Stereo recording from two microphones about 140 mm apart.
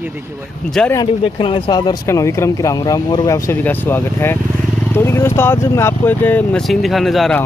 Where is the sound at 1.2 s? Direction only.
40° left (ahead or behind); by 7.4 s centre (ahead or behind).